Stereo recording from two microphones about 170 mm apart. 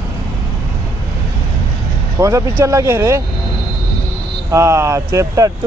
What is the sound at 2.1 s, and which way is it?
Speech, 20° right (ahead or behind).